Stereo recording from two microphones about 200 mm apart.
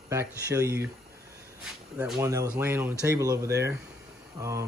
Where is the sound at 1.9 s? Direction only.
5° right (ahead or behind).